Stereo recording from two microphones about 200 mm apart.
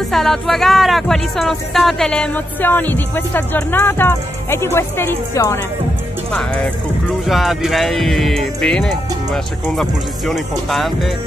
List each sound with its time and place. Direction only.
0.1 s speech: centre (ahead or behind)